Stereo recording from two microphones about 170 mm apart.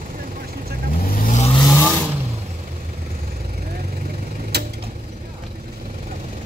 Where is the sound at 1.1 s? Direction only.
45° left (ahead or behind).